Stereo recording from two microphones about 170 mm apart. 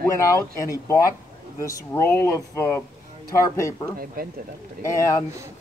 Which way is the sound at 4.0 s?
60° right (ahead or behind).